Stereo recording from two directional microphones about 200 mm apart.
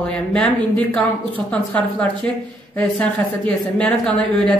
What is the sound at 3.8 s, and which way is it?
Speech, 5° left (ahead or behind).